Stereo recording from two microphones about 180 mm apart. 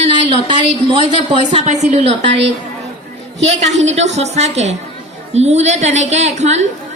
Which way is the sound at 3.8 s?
40° right (ahead or behind).